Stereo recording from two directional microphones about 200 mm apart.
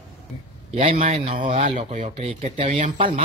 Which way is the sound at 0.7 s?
35° right (ahead or behind).